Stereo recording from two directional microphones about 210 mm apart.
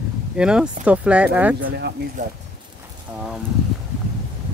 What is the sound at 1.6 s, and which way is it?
Speech, 50° right (ahead or behind).